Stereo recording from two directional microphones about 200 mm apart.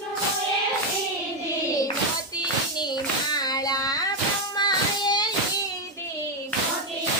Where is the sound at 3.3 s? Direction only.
20° left (ahead or behind).